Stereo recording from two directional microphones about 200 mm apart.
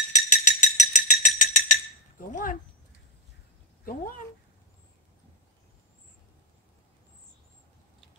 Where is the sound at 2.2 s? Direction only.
40° left (ahead or behind).